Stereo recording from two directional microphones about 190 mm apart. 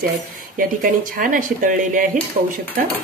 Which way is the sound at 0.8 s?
45° right (ahead or behind).